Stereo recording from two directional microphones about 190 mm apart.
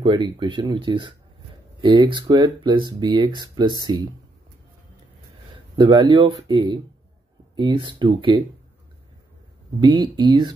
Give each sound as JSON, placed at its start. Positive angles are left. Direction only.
{"t": 0.0, "sound": "speech", "side_deg": -25}
{"t": 5.8, "sound": "speech", "side_deg": -25}
{"t": 9.8, "sound": "speech", "side_deg": -25}